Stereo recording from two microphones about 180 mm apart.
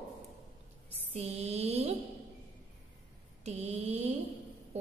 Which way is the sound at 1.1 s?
35° right (ahead or behind).